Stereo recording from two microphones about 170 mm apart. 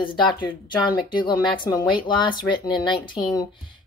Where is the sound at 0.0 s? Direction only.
30° left (ahead or behind).